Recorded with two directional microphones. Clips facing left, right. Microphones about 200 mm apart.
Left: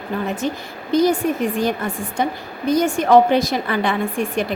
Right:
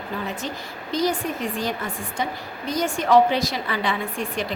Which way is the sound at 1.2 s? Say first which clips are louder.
Left 8 dB; 55° left (ahead or behind).